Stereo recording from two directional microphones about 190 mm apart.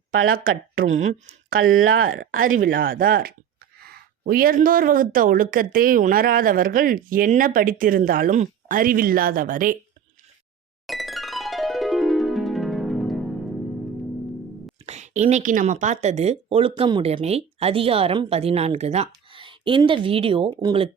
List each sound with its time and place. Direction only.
0.1 s speech: 90° right
2.0 s speech: 45° right (ahead or behind)
10.8 s music: centre (ahead or behind)
14.8 s speech: 35° right (ahead or behind)